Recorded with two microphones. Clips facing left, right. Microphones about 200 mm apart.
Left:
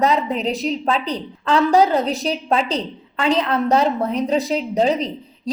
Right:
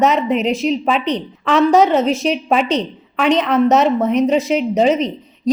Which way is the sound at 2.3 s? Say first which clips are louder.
Right 4 dB; 75° right (ahead or behind).